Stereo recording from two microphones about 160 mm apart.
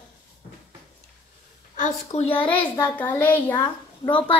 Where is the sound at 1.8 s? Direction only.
45° left (ahead or behind).